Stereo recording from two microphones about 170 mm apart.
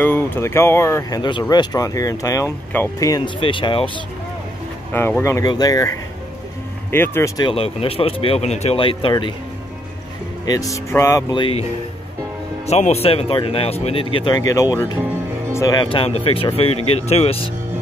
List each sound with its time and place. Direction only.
0.0 s speech: 15° left (ahead or behind)
3.3 s speech: 30° left (ahead or behind)
4.9 s speech: 15° left (ahead or behind)
6.9 s speech: 15° left (ahead or behind)
7.4 s speech: 35° left (ahead or behind)
10.4 s speech: 20° left (ahead or behind)
11.3 s speech: 30° left (ahead or behind)
12.6 s speech: 40° left (ahead or behind)